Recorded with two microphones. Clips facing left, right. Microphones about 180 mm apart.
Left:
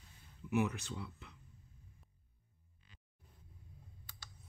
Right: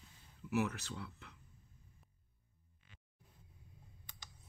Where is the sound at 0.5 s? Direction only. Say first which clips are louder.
Left 2 dB; centre (ahead or behind).